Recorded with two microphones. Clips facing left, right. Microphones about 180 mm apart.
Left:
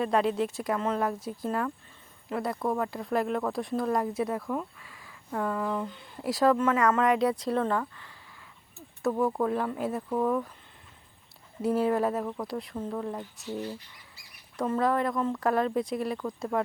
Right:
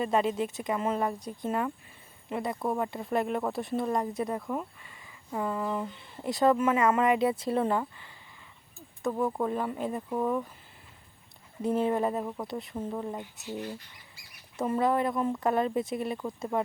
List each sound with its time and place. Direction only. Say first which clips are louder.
0.0 s speech: left 1 dB; centre (ahead or behind)
9.0 s speech: left 2 dB; centre (ahead or behind)
11.6 s speech: left 1 dB; 5° left (ahead or behind)
14.6 s speech: even; 10° right (ahead or behind)
15.2 s speech: even; 20° right (ahead or behind)
15.4 s speech: left 2 dB; centre (ahead or behind)